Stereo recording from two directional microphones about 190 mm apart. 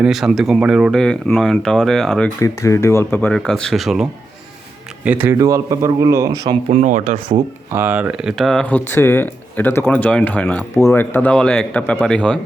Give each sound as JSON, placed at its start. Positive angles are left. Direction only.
{"t": 0.0, "sound": "speech", "side_deg": -5}
{"t": 2.4, "sound": "a man's voice", "side_deg": 15}
{"t": 6.7, "sound": "speech", "side_deg": -45}
{"t": 7.2, "sound": "speech", "side_deg": -25}
{"t": 7.7, "sound": "speech", "side_deg": -10}